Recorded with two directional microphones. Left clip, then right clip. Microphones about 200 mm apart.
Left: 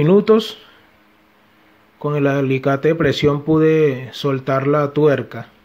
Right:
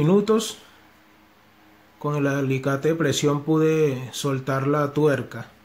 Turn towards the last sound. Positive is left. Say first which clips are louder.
# left 6 dB
turn(degrees=20)  # may be behind; listen again after turning